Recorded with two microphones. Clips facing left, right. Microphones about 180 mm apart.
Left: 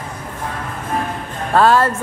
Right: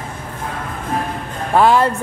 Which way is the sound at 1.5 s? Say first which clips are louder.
Even; 15° right (ahead or behind).